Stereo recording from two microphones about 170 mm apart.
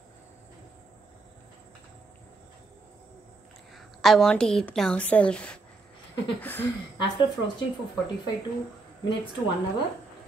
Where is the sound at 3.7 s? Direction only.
Centre (ahead or behind).